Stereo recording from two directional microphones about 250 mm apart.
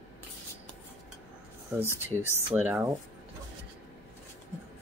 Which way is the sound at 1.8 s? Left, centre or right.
Centre.